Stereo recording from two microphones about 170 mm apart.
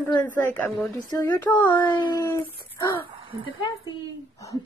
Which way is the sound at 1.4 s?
10° left (ahead or behind).